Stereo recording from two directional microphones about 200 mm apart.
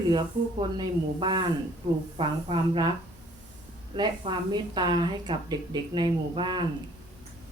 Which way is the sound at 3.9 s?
20° right (ahead or behind).